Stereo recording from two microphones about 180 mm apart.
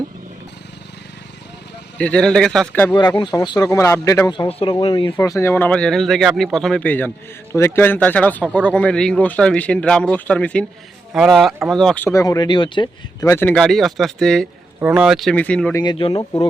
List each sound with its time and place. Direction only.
2.0 s speech: 5° left (ahead or behind)
2.9 s speech: 25° left (ahead or behind)
5.1 s speech: 15° left (ahead or behind)
12.0 s speech: 15° left (ahead or behind)
15.8 s speech: 25° left (ahead or behind)